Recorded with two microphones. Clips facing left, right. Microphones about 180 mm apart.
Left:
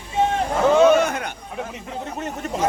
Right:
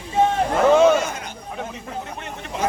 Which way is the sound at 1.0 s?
60° left (ahead or behind).